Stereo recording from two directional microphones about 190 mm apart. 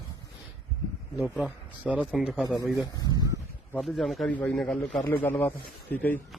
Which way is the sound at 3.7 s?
Centre (ahead or behind).